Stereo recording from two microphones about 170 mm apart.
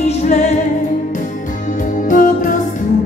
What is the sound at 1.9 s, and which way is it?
Music, 50° left (ahead or behind).